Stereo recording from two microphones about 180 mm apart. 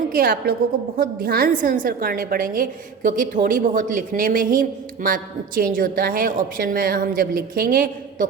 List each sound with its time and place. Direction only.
0.1 s a woman's voice: 55° right (ahead or behind)